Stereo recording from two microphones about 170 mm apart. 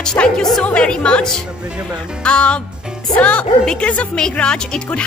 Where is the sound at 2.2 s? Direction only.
5° left (ahead or behind).